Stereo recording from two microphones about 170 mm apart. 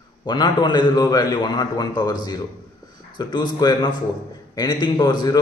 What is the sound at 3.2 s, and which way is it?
A man's voice, 25° left (ahead or behind).